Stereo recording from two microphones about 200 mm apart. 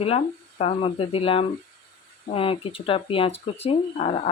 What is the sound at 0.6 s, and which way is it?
Speech, 30° left (ahead or behind).